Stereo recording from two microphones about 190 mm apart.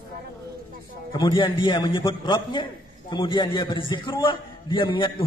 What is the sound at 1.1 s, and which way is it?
A man's voice, 25° left (ahead or behind).